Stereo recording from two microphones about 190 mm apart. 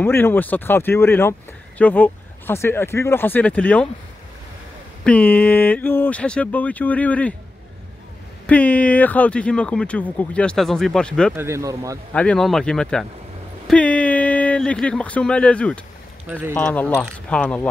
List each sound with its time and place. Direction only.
0.0 s speech: 10° left (ahead or behind)
5.0 s speech: 10° left (ahead or behind)
8.5 s speech: 10° left (ahead or behind)
11.3 s speech: 15° right (ahead or behind)
12.1 s speech: 5° left (ahead or behind)
16.3 s speech: 10° right (ahead or behind)
16.5 s speech: 5° left (ahead or behind)